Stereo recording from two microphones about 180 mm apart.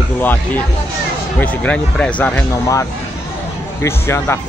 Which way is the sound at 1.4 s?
10° left (ahead or behind).